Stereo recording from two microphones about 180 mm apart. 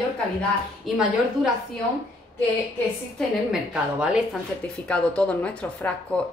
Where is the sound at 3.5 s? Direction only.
5° right (ahead or behind).